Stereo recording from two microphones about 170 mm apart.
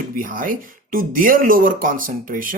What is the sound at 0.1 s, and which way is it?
Speech, 55° right (ahead or behind).